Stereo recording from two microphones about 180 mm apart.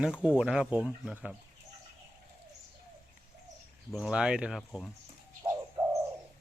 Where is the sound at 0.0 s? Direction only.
5° right (ahead or behind).